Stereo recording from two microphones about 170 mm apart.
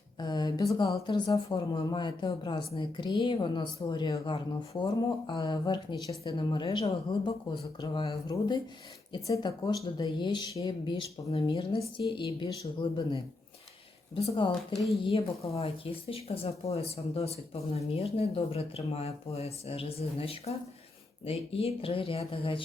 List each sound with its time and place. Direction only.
0.2 s speech: 25° left (ahead or behind)
14.2 s speech: 35° left (ahead or behind)
15.5 s speech: 35° left (ahead or behind)